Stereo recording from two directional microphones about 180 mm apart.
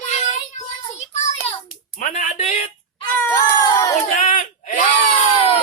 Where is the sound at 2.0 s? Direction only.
45° left (ahead or behind).